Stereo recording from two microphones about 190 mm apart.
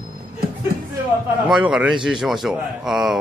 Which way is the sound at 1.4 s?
5° right (ahead or behind).